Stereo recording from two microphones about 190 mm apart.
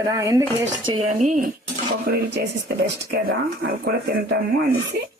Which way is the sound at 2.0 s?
55° right (ahead or behind).